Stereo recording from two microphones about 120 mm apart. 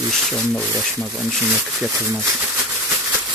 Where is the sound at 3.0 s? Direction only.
15° right (ahead or behind).